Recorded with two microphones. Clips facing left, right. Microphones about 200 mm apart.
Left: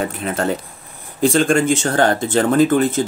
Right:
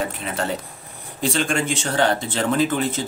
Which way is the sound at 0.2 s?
50° left (ahead or behind).